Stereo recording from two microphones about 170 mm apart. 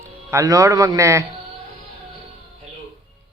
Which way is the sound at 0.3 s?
20° right (ahead or behind).